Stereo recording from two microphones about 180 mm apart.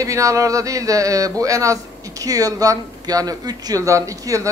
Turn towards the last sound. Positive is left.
turn(degrees=-20)  # may be behind; listen again after turning